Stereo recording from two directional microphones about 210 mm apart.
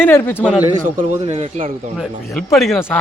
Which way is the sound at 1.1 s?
25° right (ahead or behind).